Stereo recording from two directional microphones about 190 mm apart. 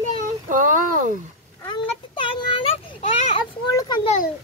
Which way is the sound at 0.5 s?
45° right (ahead or behind).